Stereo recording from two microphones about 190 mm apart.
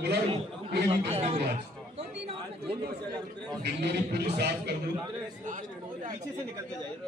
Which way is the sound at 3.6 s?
60° right (ahead or behind).